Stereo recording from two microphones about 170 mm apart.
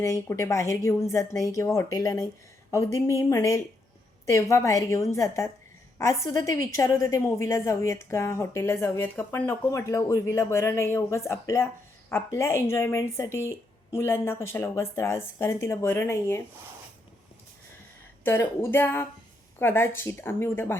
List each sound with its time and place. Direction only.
0.0 s a woman's voice: 15° left (ahead or behind)
18.2 s a woman's voice: 15° left (ahead or behind)